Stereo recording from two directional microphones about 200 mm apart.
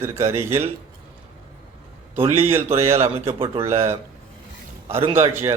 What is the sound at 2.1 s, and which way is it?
Speech, 10° right (ahead or behind).